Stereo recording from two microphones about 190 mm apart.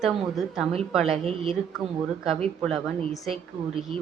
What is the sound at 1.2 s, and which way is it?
Speech, 30° right (ahead or behind).